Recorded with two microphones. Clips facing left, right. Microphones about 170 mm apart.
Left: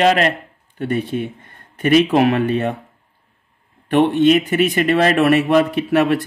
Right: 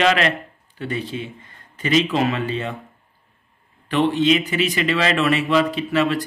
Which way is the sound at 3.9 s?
60° left (ahead or behind).